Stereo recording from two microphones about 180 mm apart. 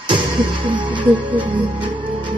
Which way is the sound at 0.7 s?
25° right (ahead or behind).